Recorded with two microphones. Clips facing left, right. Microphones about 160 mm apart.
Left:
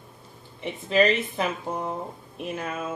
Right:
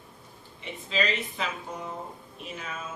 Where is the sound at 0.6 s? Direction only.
60° left (ahead or behind).